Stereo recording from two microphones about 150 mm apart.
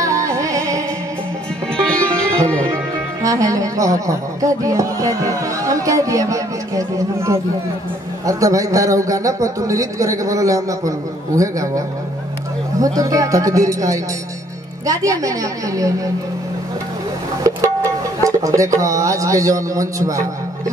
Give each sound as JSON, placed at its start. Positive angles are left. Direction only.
{"t": 0.0, "sound": "music", "side_deg": -20}
{"t": 1.8, "sound": "music", "side_deg": 5}
{"t": 2.7, "sound": "a woman's voice", "side_deg": -20}
{"t": 12.8, "sound": "a woman's voice", "side_deg": -25}
{"t": 17.4, "sound": "speech", "side_deg": -20}